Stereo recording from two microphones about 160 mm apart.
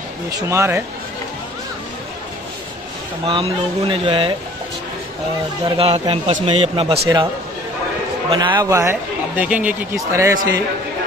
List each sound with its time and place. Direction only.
0.3 s speech: 20° right (ahead or behind)
3.3 s speech: 35° right (ahead or behind)
5.8 s speech: 35° right (ahead or behind)
8.3 s speech: 30° right (ahead or behind); by 9.8 s 10° right (ahead or behind)
9.9 s a man's voice: 20° right (ahead or behind)